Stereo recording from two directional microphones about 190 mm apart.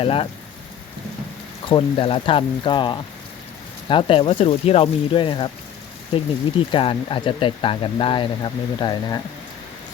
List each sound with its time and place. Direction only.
0.0 s speech: 30° left (ahead or behind)
1.7 s speech: 30° left (ahead or behind)
6.7 s speech: 25° left (ahead or behind)